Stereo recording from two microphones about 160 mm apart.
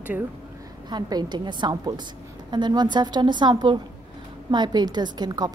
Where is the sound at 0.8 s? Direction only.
25° right (ahead or behind).